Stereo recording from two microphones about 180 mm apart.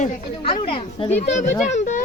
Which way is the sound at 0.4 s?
30° left (ahead or behind).